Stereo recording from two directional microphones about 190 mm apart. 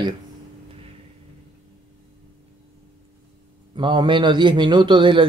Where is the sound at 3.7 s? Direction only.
25° right (ahead or behind).